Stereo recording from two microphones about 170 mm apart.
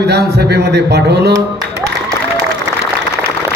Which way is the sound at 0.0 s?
70° right (ahead or behind).